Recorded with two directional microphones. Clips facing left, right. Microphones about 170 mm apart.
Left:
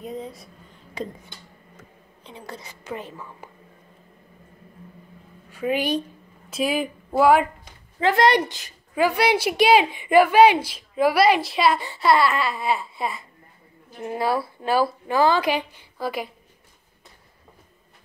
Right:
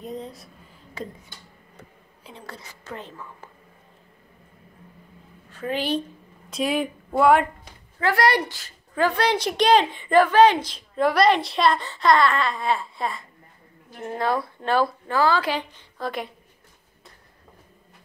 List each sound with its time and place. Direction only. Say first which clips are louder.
0.0 s a sound: left 1 dB; centre (ahead or behind)
1.0 s a woman's voice: left 3 dB; 15° left (ahead or behind)
2.4 s a woman's voice: left 4 dB; 15° left (ahead or behind)
5.5 s a woman's voice: left 2 dB; 10° left (ahead or behind)
6.5 s speech: even; centre (ahead or behind)
8.0 s a woman's voice: left 3 dB; 20° left (ahead or behind)
15.1 s a woman's voice: left 2 dB; 15° left (ahead or behind)